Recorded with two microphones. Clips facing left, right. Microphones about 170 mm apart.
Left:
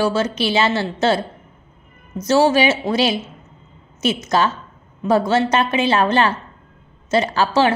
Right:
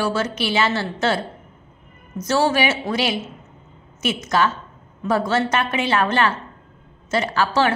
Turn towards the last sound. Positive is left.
turn(degrees=30)  # may be behind; listen again after turning